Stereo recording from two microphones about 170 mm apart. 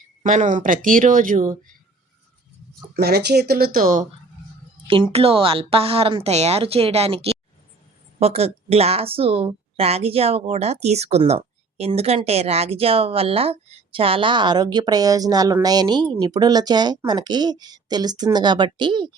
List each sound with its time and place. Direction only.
0.2 s speech: 45° right (ahead or behind)
2.9 s speech: 70° right (ahead or behind)
4.9 s a woman's voice: 30° right (ahead or behind)